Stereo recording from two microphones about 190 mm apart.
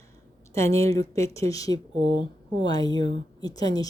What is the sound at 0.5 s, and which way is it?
Speech, 15° left (ahead or behind).